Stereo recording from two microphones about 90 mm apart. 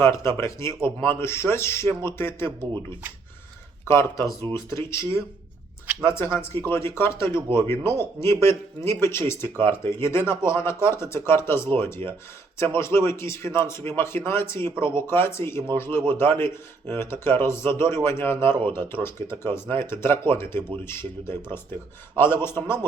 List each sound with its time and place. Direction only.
0.0 s a man's voice: 35° left (ahead or behind)
4.7 s a man's voice: 30° left (ahead or behind)